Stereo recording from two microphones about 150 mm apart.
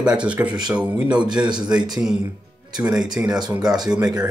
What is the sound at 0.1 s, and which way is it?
Speech, 10° right (ahead or behind).